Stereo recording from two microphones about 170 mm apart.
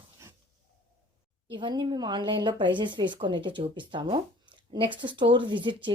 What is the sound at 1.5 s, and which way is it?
Speech, 25° right (ahead or behind).